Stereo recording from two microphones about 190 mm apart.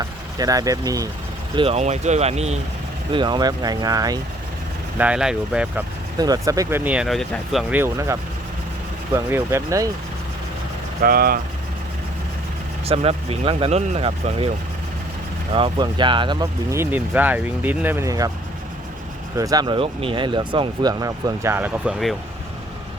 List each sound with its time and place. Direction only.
0.0 s speech: 20° right (ahead or behind)
1.5 s speech: 30° right (ahead or behind)
3.1 s speech: 25° right (ahead or behind)
4.9 s speech: 5° right (ahead or behind)
6.1 s speech: 20° right (ahead or behind)
11.0 s speech: 50° right (ahead or behind)
12.8 s speech: 30° right (ahead or behind)
15.5 s speech: 25° right (ahead or behind)
19.4 s speech: 20° right (ahead or behind); by 22.1 s centre (ahead or behind)